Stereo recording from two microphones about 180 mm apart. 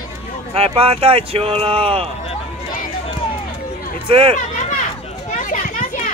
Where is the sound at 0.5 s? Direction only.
30° right (ahead or behind).